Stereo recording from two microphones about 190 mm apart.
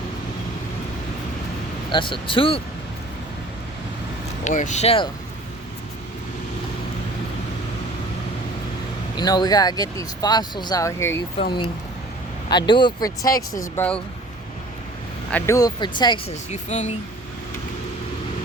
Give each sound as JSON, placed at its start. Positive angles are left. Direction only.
{"t": 1.9, "sound": "speech", "side_deg": 25}
{"t": 4.4, "sound": "speech", "side_deg": 40}
{"t": 9.1, "sound": "speech", "side_deg": 20}
{"t": 12.5, "sound": "speech", "side_deg": 25}
{"t": 15.3, "sound": "speech", "side_deg": 10}